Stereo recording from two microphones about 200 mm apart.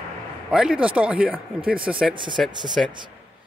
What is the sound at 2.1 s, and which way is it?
Speech, 25° right (ahead or behind).